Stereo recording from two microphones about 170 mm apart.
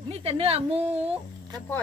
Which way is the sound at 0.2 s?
35° right (ahead or behind).